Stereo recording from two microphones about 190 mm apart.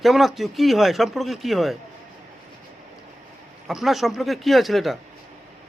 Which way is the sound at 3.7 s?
Centre (ahead or behind).